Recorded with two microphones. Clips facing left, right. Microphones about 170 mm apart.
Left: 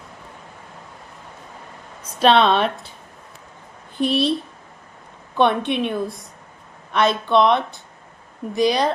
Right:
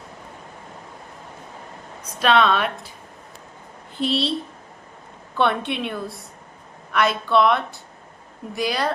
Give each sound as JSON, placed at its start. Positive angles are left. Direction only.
{"t": 2.1, "sound": "speech", "side_deg": 30}
{"t": 3.9, "sound": "a woman's voice", "side_deg": 15}
{"t": 5.4, "sound": "a woman's voice", "side_deg": 15}